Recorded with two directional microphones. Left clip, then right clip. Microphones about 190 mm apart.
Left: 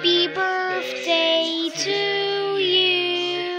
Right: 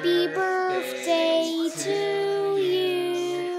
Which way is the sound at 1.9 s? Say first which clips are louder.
Left 3 dB; 15° right (ahead or behind).